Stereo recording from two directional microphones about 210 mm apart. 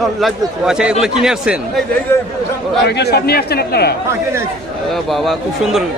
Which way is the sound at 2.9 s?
50° left (ahead or behind).